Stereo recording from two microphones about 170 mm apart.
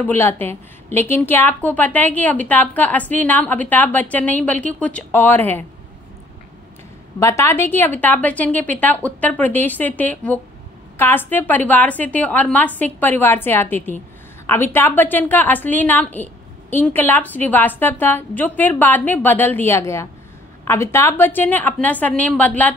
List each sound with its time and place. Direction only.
0.0 s a woman's voice: 15° left (ahead or behind)
7.2 s a woman's voice: 15° left (ahead or behind)